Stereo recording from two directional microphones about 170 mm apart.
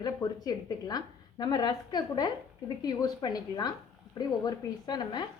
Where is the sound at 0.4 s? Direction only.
25° left (ahead or behind).